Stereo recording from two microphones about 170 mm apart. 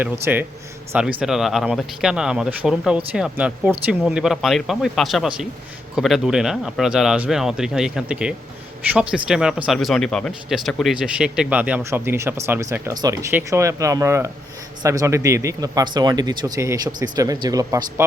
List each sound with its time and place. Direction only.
0.0 s speech: 10° right (ahead or behind)